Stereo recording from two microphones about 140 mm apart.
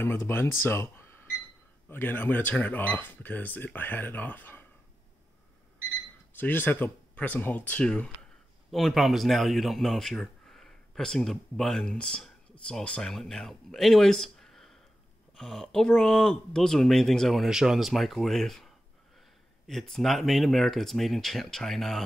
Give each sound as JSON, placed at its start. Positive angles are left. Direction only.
{"t": 0.0, "sound": "speech", "side_deg": 15}
{"t": 6.3, "sound": "speech", "side_deg": 15}